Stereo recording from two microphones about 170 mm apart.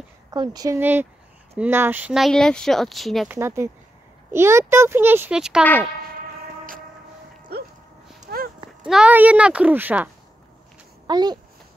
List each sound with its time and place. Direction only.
0.3 s speech: 20° right (ahead or behind); by 3.3 s centre (ahead or behind)
3.3 s a child's voice: 15° right (ahead or behind)
8.3 s livestock: 70° right (ahead or behind)
8.8 s a child's voice: 5° right (ahead or behind)
11.1 s speech: 25° right (ahead or behind)